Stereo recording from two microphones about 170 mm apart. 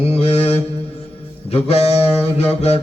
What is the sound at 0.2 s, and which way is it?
Mantra, 40° left (ahead or behind).